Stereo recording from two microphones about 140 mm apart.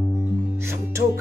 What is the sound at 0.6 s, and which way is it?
Music, 20° right (ahead or behind).